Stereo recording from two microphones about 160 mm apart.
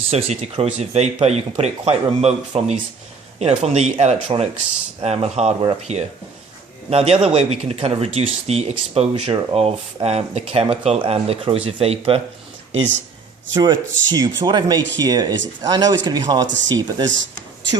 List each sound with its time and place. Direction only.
0.1 s speech: 40° right (ahead or behind)
13.6 s speech: 25° right (ahead or behind)